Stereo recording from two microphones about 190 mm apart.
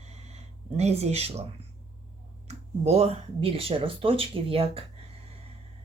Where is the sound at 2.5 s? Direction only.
35° right (ahead or behind).